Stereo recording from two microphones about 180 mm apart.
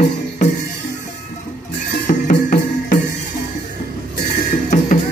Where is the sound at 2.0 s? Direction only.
45° left (ahead or behind).